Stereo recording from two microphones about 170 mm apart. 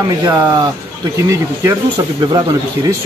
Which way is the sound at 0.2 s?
20° right (ahead or behind).